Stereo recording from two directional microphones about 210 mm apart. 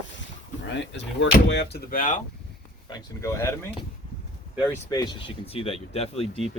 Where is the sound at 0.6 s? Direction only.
60° left (ahead or behind); by 2.1 s 40° left (ahead or behind).